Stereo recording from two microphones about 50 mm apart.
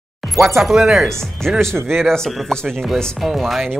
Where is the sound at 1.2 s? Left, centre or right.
Centre.